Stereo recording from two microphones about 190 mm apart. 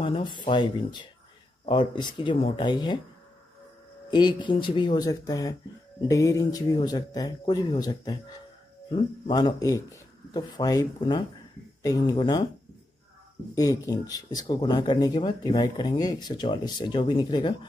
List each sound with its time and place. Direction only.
0.0 s speech: 25° left (ahead or behind)
4.1 s speech: 25° left (ahead or behind)
13.6 s speech: 20° left (ahead or behind)